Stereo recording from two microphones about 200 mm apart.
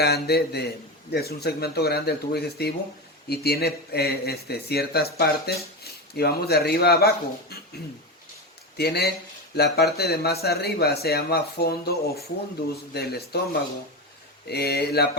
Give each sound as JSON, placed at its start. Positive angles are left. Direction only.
{"t": 0.0, "sound": "a man's voice", "side_deg": 55}
{"t": 8.8, "sound": "a man's voice", "side_deg": 55}